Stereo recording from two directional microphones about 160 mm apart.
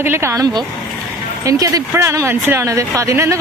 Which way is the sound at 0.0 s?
15° right (ahead or behind).